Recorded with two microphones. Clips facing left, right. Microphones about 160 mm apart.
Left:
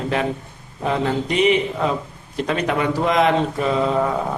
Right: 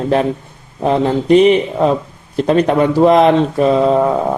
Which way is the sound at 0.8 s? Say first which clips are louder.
Right 7 dB; 35° right (ahead or behind).